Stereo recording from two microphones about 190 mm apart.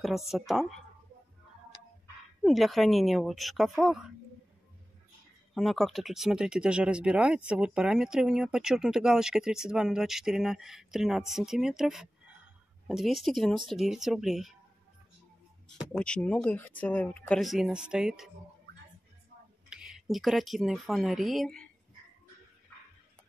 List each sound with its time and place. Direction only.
0.0 s speech: centre (ahead or behind)
2.4 s speech: centre (ahead or behind)
5.5 s speech: centre (ahead or behind)
15.9 s speech: 5° left (ahead or behind)
19.7 s speech: 5° right (ahead or behind)